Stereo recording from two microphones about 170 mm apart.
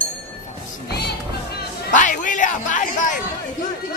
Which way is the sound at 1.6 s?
55° left (ahead or behind).